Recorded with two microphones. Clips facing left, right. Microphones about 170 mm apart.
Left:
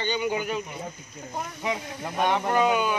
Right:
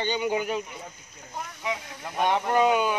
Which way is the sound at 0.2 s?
25° right (ahead or behind).